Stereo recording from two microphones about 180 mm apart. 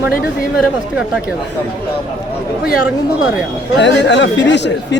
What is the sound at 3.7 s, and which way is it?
Speech, 75° left (ahead or behind).